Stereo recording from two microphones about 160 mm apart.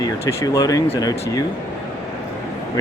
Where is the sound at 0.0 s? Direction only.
20° left (ahead or behind).